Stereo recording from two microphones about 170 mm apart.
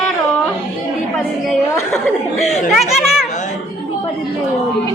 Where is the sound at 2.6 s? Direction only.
Centre (ahead or behind).